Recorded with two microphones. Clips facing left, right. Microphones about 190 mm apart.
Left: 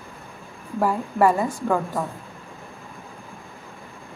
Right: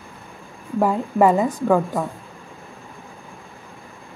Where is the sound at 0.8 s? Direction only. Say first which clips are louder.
Right 3 dB; 20° right (ahead or behind).